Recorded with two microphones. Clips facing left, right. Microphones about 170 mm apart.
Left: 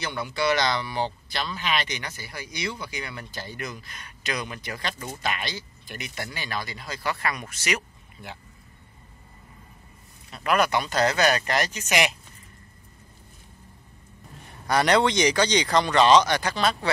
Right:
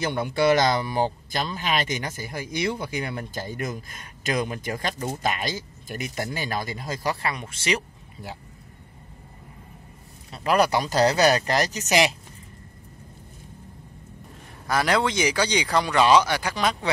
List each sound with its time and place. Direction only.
0.0 s speech: 50° right (ahead or behind); by 8.4 s 35° right (ahead or behind)
10.3 s speech: 35° right (ahead or behind)
14.7 s speech: centre (ahead or behind)